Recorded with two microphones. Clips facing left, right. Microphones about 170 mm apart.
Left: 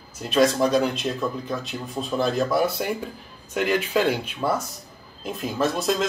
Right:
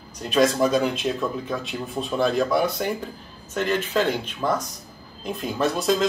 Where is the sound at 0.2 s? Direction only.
Centre (ahead or behind).